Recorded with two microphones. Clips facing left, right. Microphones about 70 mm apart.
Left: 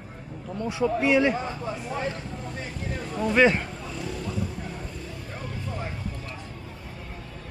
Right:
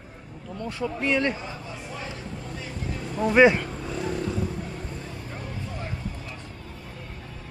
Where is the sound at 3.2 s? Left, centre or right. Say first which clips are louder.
Right 3 dB; centre.